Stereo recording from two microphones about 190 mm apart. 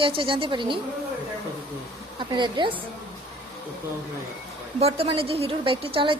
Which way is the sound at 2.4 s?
25° right (ahead or behind).